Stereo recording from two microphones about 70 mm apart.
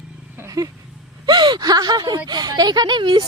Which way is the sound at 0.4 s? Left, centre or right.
Right.